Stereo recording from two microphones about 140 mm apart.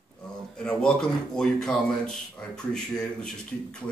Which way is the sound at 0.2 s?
5° left (ahead or behind).